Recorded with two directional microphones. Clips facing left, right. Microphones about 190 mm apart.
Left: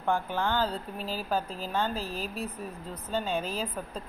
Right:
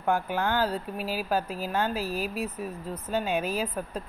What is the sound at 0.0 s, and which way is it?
Speech, 10° right (ahead or behind).